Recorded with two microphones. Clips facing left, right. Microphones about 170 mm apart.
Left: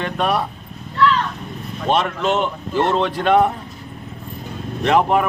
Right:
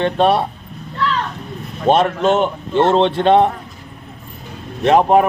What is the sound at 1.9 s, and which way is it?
Speech, 50° right (ahead or behind).